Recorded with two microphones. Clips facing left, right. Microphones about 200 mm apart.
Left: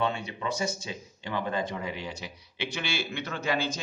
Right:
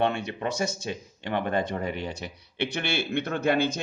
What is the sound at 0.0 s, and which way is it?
Speech, 65° right (ahead or behind).